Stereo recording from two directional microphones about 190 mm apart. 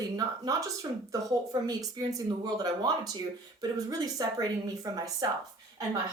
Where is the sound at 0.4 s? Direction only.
20° right (ahead or behind).